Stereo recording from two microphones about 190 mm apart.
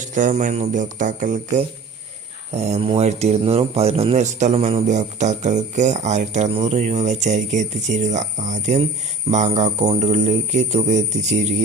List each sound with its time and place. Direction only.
0.0 s speech: 40° right (ahead or behind)